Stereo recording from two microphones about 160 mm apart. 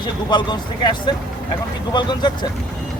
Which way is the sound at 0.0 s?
30° left (ahead or behind).